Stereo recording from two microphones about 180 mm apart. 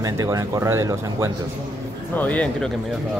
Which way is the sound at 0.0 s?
20° right (ahead or behind).